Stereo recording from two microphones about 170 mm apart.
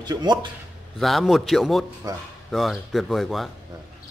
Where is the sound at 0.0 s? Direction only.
25° right (ahead or behind).